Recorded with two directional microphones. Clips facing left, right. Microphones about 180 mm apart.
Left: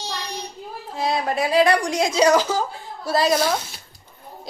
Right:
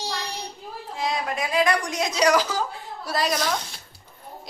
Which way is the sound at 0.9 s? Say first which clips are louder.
Left 5 dB; 35° left (ahead or behind).